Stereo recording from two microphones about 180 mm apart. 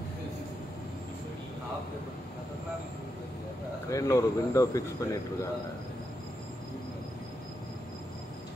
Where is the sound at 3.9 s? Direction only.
15° left (ahead or behind).